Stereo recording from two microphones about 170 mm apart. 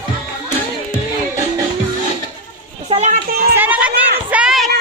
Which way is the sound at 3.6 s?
10° right (ahead or behind).